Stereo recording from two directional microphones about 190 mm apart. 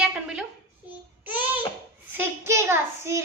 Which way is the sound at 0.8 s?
10° right (ahead or behind).